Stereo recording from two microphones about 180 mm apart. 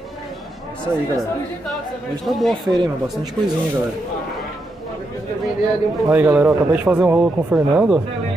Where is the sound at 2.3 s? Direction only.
Centre (ahead or behind).